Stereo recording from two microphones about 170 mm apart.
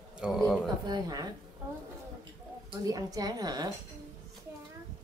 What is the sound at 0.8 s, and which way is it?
Speech, 25° right (ahead or behind).